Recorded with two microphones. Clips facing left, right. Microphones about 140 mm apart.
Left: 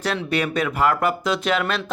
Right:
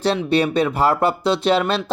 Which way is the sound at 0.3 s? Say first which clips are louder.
Right 4 dB; 30° right (ahead or behind).